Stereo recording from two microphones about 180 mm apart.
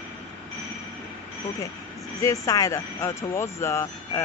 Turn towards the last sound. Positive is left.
turn(degrees=15)  # may be behind; listen again after turning